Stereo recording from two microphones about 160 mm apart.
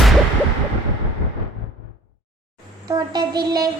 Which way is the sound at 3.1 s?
25° right (ahead or behind).